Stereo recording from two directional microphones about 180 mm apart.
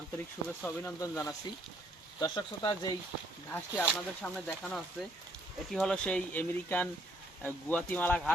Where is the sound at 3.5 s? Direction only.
10° left (ahead or behind).